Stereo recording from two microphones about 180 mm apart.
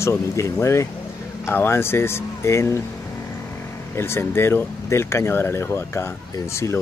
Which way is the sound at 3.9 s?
15° left (ahead or behind).